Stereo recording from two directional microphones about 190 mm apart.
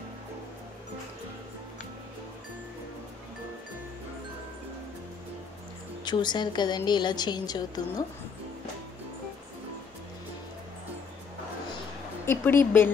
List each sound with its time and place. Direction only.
6.0 s a woman's voice: 25° left (ahead or behind)
12.3 s speech: 10° left (ahead or behind)